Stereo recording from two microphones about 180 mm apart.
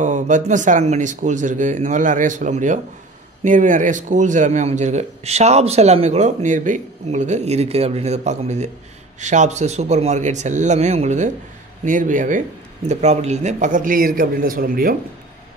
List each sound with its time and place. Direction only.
0.0 s a man's voice: 45° right (ahead or behind)